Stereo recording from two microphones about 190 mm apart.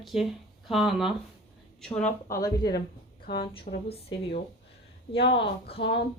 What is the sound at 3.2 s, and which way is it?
Speech, 55° left (ahead or behind).